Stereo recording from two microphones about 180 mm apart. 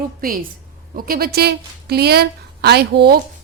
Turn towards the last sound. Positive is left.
turn(degrees=-65)  # may be behind; listen again after turning